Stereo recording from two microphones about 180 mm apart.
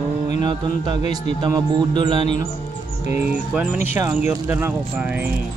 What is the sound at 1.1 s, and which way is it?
Speech, 20° right (ahead or behind).